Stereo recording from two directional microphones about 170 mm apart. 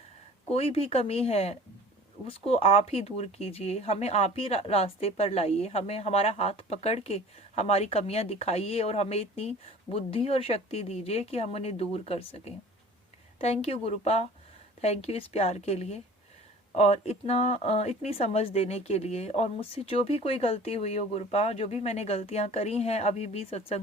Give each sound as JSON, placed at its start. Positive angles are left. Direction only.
{"t": 0.5, "sound": "speech", "side_deg": 35}